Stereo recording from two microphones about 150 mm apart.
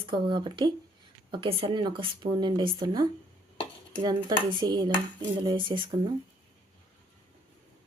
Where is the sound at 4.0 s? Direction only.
30° right (ahead or behind).